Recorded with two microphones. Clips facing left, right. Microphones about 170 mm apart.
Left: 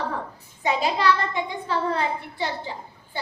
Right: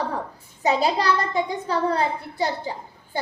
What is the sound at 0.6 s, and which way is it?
A child's voice, 35° right (ahead or behind).